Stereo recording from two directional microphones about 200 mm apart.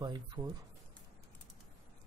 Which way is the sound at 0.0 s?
20° right (ahead or behind).